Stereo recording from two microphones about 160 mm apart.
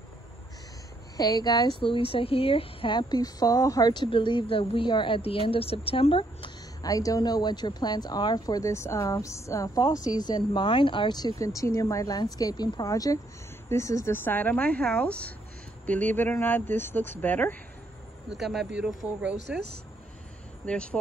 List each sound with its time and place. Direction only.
1.1 s speech: 25° left (ahead or behind)
18.4 s speech: centre (ahead or behind)
20.6 s speech: 5° left (ahead or behind)